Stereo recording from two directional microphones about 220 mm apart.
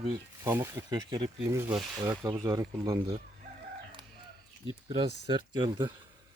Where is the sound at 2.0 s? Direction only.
15° right (ahead or behind).